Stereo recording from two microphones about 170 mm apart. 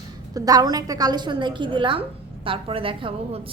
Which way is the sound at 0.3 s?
20° right (ahead or behind).